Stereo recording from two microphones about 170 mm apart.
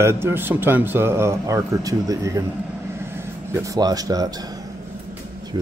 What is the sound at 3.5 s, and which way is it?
Speech, 20° right (ahead or behind).